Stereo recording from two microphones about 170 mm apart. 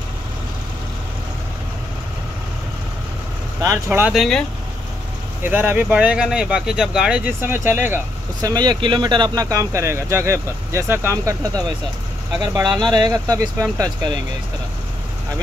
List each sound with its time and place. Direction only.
3.6 s speech: 15° right (ahead or behind)
4.1 s speech: centre (ahead or behind)
5.4 s speech: 10° right (ahead or behind)
8.4 s speech: 25° right (ahead or behind)